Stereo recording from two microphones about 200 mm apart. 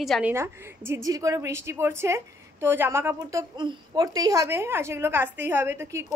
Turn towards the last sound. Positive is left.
turn(degrees=-15)  # may be behind; listen again after turning